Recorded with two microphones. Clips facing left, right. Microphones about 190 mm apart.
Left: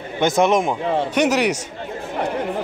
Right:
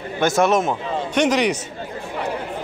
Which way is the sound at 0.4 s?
15° left (ahead or behind).